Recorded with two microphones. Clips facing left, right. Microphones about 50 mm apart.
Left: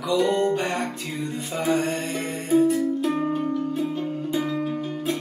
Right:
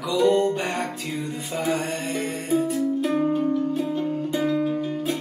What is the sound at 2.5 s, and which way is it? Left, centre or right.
Music, centre.